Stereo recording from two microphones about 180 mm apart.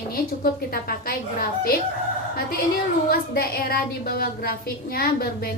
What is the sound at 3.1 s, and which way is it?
A woman's voice, 55° left (ahead or behind).